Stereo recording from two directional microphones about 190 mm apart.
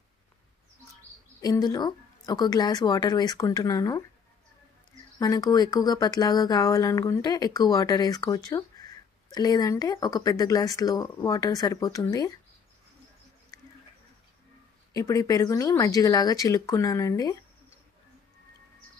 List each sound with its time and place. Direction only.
1.4 s speech: 20° left (ahead or behind)
5.2 s speech: 20° left (ahead or behind)
15.0 s speech: 20° left (ahead or behind)